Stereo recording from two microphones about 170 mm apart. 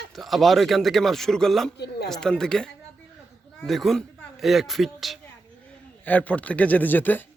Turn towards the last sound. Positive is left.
turn(degrees=10)  # may be behind; listen again after turning